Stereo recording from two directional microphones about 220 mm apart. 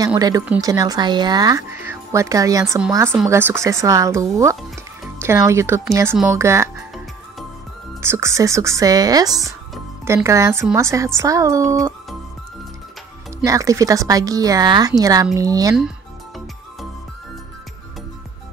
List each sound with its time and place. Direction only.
0.0 s speech: 15° right (ahead or behind)
8.0 s speech: 10° right (ahead or behind)
13.4 s speech: 15° right (ahead or behind)